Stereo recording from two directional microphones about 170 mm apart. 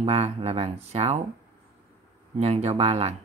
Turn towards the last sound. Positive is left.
turn(degrees=-35)  # may be behind; listen again after turning